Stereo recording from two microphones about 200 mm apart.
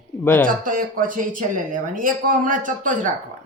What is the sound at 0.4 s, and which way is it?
Speech, 45° right (ahead or behind).